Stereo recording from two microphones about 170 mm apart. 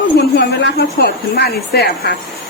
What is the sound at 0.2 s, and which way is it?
A woman's voice, 75° left (ahead or behind).